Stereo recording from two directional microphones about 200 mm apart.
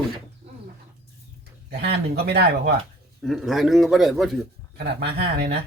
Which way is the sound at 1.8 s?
55° right (ahead or behind).